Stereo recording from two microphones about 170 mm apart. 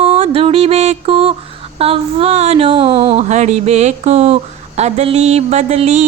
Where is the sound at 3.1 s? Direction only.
45° right (ahead or behind).